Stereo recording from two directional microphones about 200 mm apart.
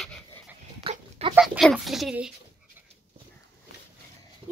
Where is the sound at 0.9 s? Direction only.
30° right (ahead or behind).